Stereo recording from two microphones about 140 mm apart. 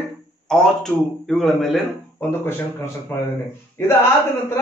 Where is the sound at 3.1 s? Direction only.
15° left (ahead or behind).